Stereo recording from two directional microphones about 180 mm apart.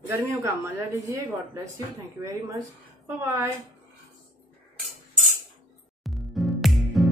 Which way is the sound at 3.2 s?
15° right (ahead or behind).